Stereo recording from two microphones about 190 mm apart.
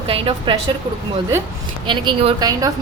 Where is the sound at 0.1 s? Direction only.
30° right (ahead or behind).